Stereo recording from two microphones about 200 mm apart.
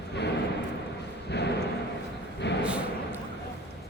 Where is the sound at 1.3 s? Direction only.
60° left (ahead or behind).